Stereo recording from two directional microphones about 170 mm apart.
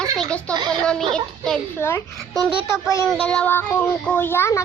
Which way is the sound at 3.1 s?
5° left (ahead or behind).